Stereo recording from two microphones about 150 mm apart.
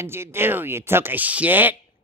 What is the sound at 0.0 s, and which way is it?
Speech, 15° right (ahead or behind).